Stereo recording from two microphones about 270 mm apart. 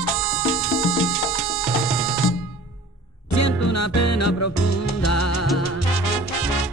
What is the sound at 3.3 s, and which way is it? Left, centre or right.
Music, left.